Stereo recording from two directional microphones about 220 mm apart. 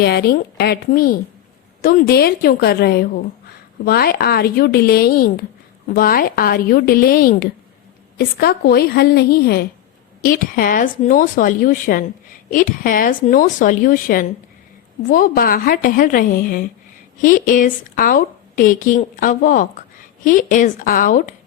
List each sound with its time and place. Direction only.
0.0 s a woman's voice: 45° left (ahead or behind)